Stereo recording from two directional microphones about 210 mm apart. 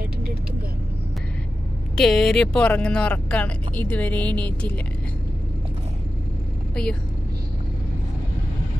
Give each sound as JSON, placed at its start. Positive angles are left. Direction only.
{"t": 0.0, "sound": "vehicle", "side_deg": -50}
{"t": 2.0, "sound": "speech", "side_deg": 5}
{"t": 6.7, "sound": "speech", "side_deg": 5}